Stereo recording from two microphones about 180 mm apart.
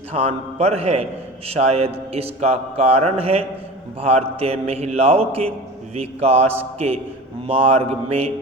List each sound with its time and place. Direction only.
0.1 s a man's voice: 35° right (ahead or behind)